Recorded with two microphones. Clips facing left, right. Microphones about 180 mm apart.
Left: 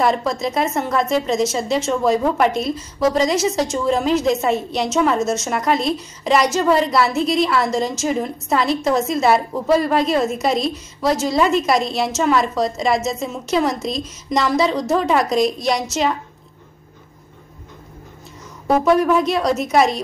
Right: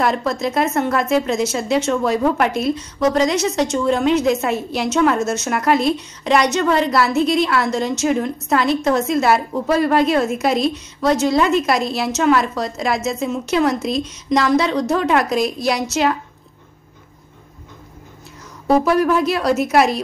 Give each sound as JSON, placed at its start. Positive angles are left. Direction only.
{"t": 0.0, "sound": "a woman's voice", "side_deg": 0}
{"t": 18.7, "sound": "a woman's voice", "side_deg": -5}